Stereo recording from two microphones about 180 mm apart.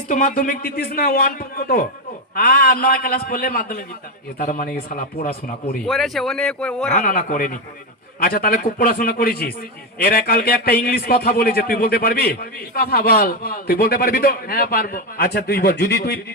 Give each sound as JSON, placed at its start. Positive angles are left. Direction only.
{"t": 0.1, "sound": "a man's voice", "side_deg": 45}
{"t": 5.8, "sound": "speech", "side_deg": 0}
{"t": 6.9, "sound": "a man's voice", "side_deg": 50}